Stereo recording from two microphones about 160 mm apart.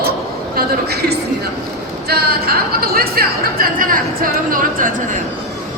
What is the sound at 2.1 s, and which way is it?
Speech, 75° right (ahead or behind).